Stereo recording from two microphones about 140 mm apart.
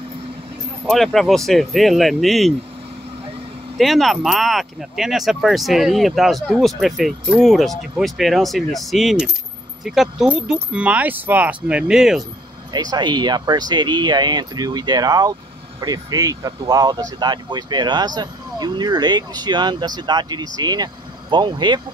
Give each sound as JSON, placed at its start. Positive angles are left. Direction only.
{"t": 0.8, "sound": "speech", "side_deg": 0}
{"t": 3.7, "sound": "speech", "side_deg": 0}
{"t": 12.7, "sound": "speech", "side_deg": -30}